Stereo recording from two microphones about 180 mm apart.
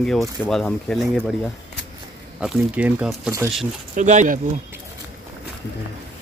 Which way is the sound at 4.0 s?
45° right (ahead or behind).